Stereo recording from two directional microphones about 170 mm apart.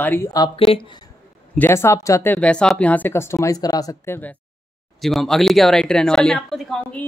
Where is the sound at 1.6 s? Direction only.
15° left (ahead or behind).